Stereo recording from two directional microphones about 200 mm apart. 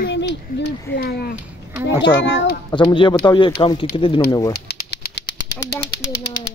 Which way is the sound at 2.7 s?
25° left (ahead or behind).